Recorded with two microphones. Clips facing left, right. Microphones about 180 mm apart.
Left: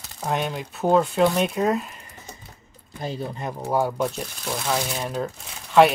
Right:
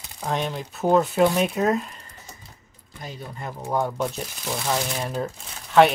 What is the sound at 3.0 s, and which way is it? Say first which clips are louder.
Speech: left 6 dB; 25° left (ahead or behind).